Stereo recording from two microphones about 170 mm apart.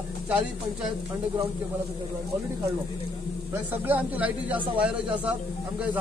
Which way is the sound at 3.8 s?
10° right (ahead or behind).